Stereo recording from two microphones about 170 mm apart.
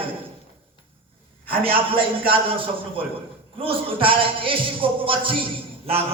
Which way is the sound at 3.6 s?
30° right (ahead or behind).